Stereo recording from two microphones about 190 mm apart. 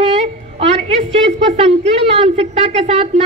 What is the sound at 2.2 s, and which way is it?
Speech, 35° right (ahead or behind).